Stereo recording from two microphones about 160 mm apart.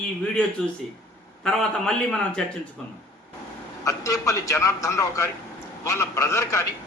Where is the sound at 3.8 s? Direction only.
20° left (ahead or behind).